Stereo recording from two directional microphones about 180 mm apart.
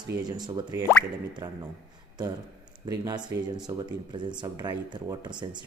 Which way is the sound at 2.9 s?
20° right (ahead or behind).